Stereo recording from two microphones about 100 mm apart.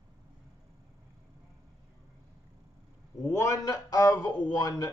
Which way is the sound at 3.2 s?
30° left (ahead or behind).